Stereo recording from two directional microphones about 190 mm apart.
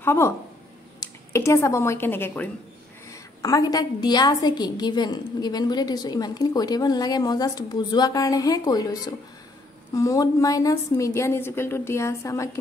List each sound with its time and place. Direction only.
0.0 s a woman's voice: 15° left (ahead or behind)